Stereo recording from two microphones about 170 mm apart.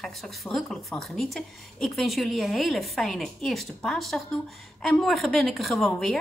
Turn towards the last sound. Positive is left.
turn(degrees=0)  # may be behind; listen again after turning